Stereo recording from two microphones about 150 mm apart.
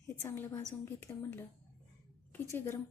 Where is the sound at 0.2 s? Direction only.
15° left (ahead or behind).